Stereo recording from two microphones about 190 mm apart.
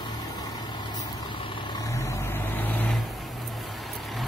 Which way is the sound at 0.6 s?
25° left (ahead or behind).